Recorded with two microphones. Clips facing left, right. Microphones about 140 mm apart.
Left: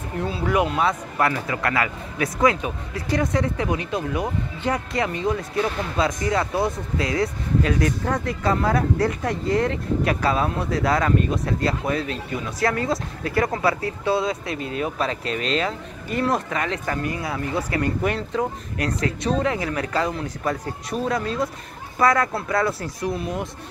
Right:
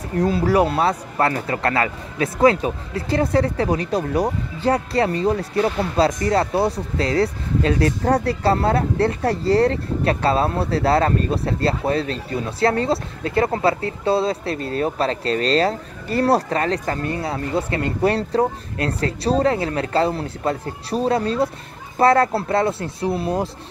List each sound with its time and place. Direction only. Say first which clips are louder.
0.2 s speech: right 5 dB; 40° right (ahead or behind)